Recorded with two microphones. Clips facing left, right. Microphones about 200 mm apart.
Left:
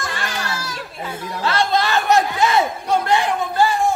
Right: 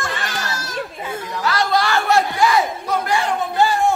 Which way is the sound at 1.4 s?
25° left (ahead or behind).